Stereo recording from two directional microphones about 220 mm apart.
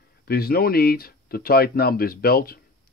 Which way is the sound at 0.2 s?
45° left (ahead or behind).